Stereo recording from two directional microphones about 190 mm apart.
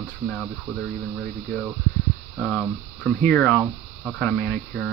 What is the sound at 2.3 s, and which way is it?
Speech, centre (ahead or behind).